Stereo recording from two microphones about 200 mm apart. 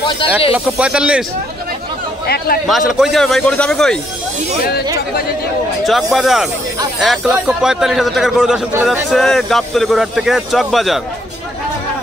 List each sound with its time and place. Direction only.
0.5 s a man's voice: 5° right (ahead or behind)
2.2 s a man's voice: 50° left (ahead or behind)
2.6 s a man's voice: centre (ahead or behind)
5.9 s a man's voice: centre (ahead or behind)